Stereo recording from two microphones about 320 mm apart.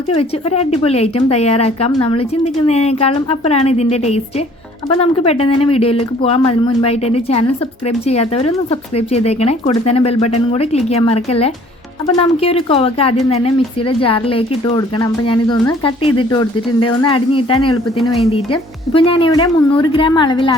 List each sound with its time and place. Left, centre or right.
0.1 s speech: centre